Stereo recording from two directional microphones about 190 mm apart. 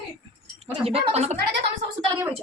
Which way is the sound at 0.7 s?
30° right (ahead or behind).